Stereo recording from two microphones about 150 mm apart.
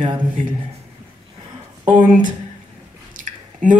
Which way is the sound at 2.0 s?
60° right (ahead or behind).